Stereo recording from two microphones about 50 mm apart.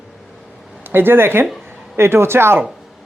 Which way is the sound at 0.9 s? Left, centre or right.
Right.